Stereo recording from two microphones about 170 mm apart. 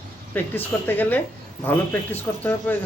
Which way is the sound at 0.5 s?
10° left (ahead or behind).